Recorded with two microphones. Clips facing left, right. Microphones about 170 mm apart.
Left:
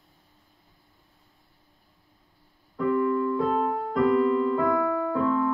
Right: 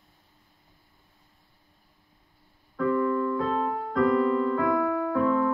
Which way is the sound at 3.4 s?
10° left (ahead or behind).